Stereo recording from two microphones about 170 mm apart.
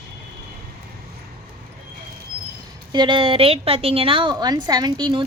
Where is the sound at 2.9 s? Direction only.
30° right (ahead or behind).